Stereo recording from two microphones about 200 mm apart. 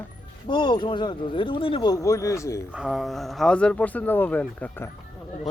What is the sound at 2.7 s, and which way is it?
Speech, 5° right (ahead or behind).